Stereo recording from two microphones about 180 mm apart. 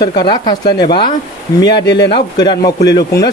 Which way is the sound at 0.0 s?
25° left (ahead or behind).